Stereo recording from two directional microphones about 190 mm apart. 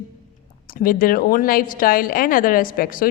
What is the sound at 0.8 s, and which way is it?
A woman's voice, 50° left (ahead or behind).